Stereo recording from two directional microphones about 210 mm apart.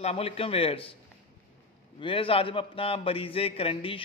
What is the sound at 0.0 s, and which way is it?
Speech, 30° left (ahead or behind).